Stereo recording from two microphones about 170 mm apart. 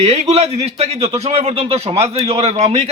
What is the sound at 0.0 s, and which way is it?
A man's voice, 40° right (ahead or behind).